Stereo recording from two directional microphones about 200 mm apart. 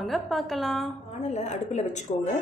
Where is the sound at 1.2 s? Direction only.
35° left (ahead or behind).